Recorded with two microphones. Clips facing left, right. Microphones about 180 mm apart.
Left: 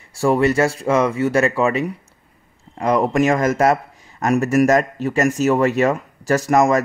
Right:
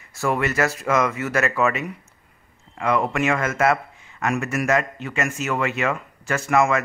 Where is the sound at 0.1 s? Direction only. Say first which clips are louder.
Left 7 dB; 30° left (ahead or behind).